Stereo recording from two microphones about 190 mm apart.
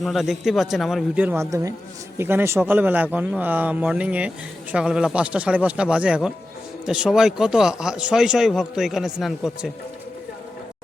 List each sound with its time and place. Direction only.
0.0 s speech: centre (ahead or behind)